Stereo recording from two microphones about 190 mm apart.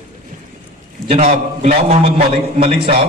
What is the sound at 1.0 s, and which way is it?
A man's voice, 35° right (ahead or behind).